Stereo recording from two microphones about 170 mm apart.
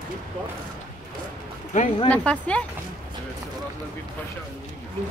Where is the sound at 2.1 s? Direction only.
5° left (ahead or behind).